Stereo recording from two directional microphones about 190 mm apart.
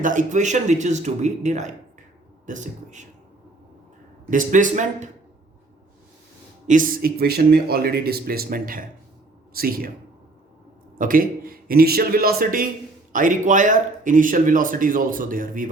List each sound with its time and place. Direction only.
0.0 s speech: 40° right (ahead or behind)
4.3 s speech: 45° right (ahead or behind)
6.7 s speech: 45° right (ahead or behind)
10.9 s a man's voice: 45° right (ahead or behind)